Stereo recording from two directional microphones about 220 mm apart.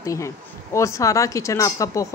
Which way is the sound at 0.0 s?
15° left (ahead or behind).